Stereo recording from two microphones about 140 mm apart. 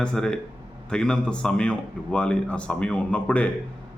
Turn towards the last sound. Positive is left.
turn(degrees=10)  # may be behind; listen again after turning